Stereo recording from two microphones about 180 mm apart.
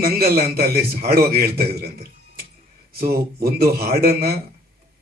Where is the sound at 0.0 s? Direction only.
55° right (ahead or behind).